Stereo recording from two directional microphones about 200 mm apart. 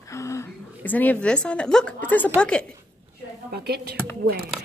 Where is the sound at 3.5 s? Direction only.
55° right (ahead or behind).